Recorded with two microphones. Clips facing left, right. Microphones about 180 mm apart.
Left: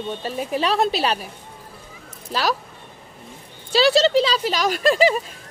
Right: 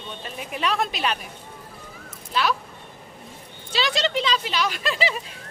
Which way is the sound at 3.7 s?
35° left (ahead or behind).